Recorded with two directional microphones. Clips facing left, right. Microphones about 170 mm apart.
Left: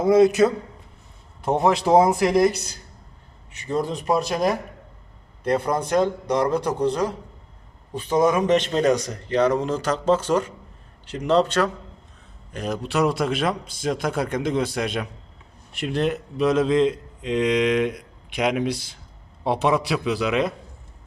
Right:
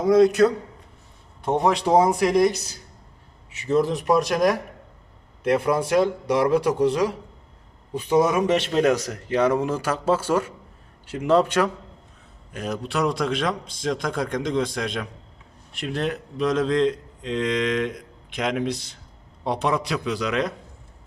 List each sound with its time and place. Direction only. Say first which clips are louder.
0.0 s speech: even; 5° left (ahead or behind)
4.0 s speech: right 2 dB; 30° left (ahead or behind)
7.9 s speech: even; 10° right (ahead or behind)
12.5 s a man's voice: left 2 dB; centre (ahead or behind)